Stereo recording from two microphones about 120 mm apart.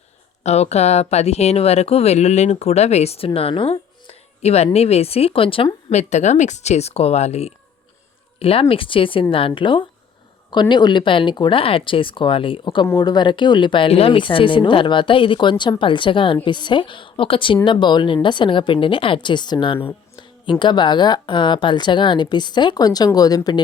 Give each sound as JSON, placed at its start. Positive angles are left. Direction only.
{"t": 0.4, "sound": "speech", "side_deg": 65}
{"t": 5.9, "sound": "speech", "side_deg": 75}
{"t": 8.4, "sound": "a woman's voice", "side_deg": 50}